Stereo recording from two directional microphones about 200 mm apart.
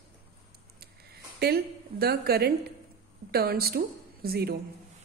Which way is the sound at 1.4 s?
50° right (ahead or behind).